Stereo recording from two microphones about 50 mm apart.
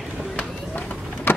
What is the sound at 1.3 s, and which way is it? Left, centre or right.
Vehicle, left.